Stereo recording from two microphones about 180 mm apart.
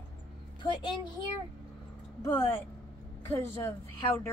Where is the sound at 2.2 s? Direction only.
10° left (ahead or behind).